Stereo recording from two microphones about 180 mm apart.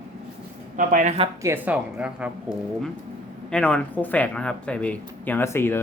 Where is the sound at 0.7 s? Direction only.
45° right (ahead or behind).